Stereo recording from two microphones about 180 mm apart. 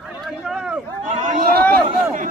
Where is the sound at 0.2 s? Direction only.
5° right (ahead or behind).